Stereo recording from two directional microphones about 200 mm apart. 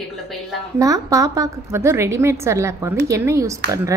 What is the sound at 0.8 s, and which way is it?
Speech, 15° right (ahead or behind).